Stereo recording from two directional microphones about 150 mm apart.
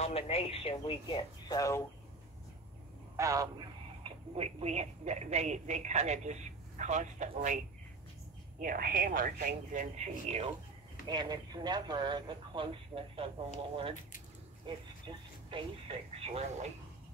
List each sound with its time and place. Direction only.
0.0 s speech: 40° left (ahead or behind); by 1.8 s 25° left (ahead or behind)
3.2 s a man's voice: 20° right (ahead or behind)
4.0 s a woman's voice: 40° right (ahead or behind)
8.5 s speech: 70° right (ahead or behind); by 10.5 s 45° right (ahead or behind)
11.1 s a man's voice: 25° right (ahead or behind)
15.0 s speech: 35° right (ahead or behind)